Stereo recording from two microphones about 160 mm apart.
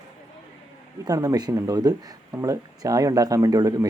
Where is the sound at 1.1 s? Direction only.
20° right (ahead or behind).